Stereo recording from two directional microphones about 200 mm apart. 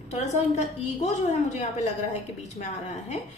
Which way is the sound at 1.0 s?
35° left (ahead or behind).